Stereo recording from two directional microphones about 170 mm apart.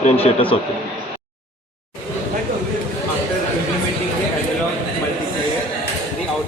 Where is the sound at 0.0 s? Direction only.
35° left (ahead or behind).